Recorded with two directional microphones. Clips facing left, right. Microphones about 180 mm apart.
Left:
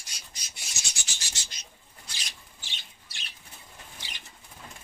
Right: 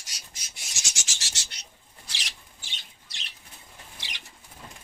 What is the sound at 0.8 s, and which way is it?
Goat, 90° right.